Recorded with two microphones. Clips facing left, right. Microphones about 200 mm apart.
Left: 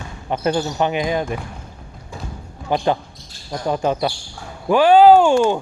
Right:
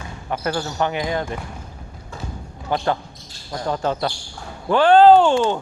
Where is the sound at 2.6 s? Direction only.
20° left (ahead or behind).